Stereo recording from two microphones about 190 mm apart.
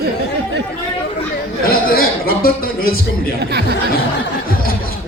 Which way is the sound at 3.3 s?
60° right (ahead or behind).